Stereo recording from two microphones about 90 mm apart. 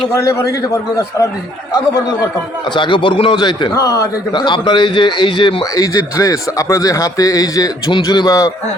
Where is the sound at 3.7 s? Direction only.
40° left (ahead or behind).